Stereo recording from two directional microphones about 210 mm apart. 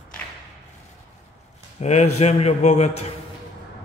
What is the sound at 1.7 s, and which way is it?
A man's voice, 30° left (ahead or behind).